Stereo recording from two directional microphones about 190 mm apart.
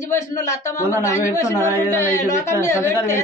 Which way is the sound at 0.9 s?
15° left (ahead or behind).